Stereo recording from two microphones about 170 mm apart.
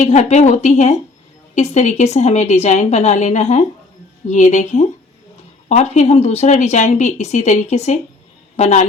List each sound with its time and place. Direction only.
0.0 s a woman's voice: 45° left (ahead or behind)